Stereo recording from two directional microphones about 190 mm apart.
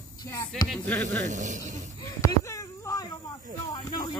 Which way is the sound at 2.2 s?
15° left (ahead or behind).